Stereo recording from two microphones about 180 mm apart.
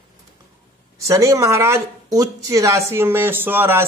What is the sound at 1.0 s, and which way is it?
Speech, 15° right (ahead or behind).